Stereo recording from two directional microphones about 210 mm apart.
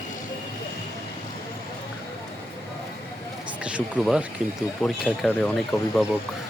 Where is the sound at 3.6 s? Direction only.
5° right (ahead or behind).